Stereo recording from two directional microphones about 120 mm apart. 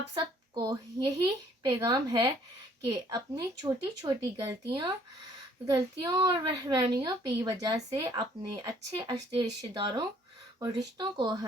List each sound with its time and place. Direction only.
0.1 s a woman's voice: 35° right (ahead or behind)
5.6 s a woman's voice: 30° right (ahead or behind)